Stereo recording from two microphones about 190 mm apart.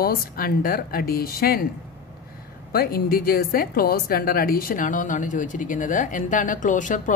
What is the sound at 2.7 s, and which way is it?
A woman's voice, 50° left (ahead or behind).